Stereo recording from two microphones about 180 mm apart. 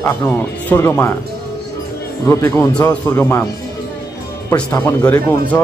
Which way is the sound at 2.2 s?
15° left (ahead or behind).